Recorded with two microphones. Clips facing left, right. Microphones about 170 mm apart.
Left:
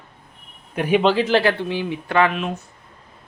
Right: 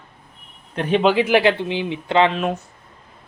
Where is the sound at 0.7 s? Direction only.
10° left (ahead or behind).